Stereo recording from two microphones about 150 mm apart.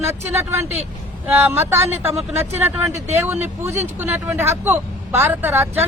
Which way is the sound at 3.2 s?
15° right (ahead or behind).